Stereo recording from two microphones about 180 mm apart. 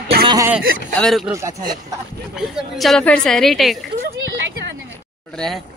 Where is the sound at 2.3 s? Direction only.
Centre (ahead or behind).